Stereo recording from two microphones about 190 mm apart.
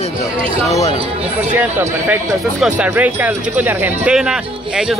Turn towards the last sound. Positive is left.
turn(degrees=-5)  # may be behind; listen again after turning